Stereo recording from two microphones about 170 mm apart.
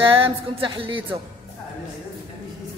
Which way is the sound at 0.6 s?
30° right (ahead or behind).